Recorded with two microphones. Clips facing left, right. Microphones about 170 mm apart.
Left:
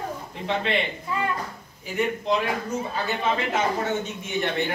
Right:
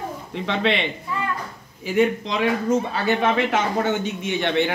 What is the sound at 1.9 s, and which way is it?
Speech, 90° right.